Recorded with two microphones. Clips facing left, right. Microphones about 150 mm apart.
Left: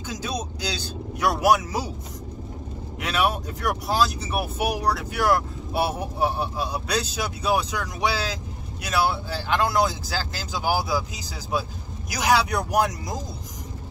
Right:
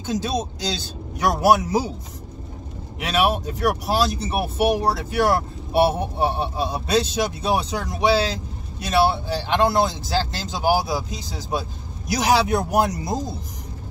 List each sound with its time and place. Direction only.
0.0 s speech: 25° right (ahead or behind)
3.1 s speech: 25° right (ahead or behind)
12.2 s speech: 25° right (ahead or behind)